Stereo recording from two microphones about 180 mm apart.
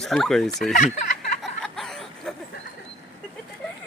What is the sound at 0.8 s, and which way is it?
Speech, 40° left (ahead or behind).